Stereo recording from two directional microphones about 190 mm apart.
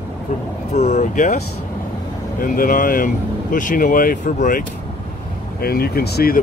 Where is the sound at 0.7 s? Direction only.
35° left (ahead or behind).